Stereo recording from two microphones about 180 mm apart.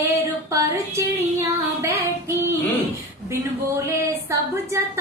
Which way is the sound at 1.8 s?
15° right (ahead or behind).